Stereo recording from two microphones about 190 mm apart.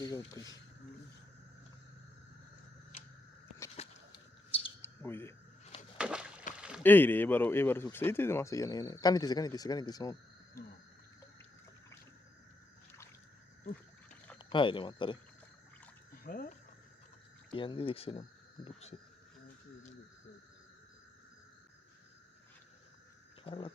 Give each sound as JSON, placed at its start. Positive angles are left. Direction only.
{"t": 0.2, "sound": "speech", "side_deg": 15}
{"t": 3.8, "sound": "a sound", "side_deg": 30}
{"t": 4.8, "sound": "bird", "side_deg": 15}
{"t": 6.0, "sound": "a sound", "side_deg": -5}
{"t": 6.6, "sound": "rowboat", "side_deg": -5}
{"t": 6.8, "sound": "speech", "side_deg": 10}
{"t": 14.3, "sound": "speech", "side_deg": 25}
{"t": 16.2, "sound": "speech", "side_deg": 50}
{"t": 17.5, "sound": "speech", "side_deg": 25}
{"t": 23.4, "sound": "a sound", "side_deg": 25}